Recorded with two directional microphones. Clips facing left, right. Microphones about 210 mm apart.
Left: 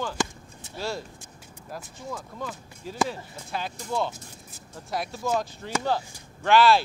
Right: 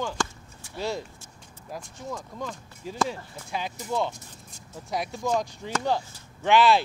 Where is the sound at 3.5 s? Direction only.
15° right (ahead or behind).